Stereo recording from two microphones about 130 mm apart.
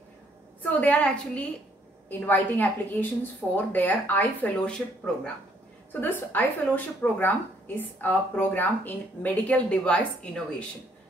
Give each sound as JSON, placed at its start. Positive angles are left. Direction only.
{"t": 0.6, "sound": "a woman's voice", "side_deg": 15}